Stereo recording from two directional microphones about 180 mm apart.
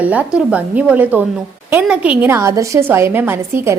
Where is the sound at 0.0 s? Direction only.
10° right (ahead or behind).